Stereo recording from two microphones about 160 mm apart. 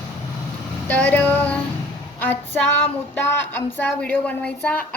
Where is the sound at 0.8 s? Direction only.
10° left (ahead or behind).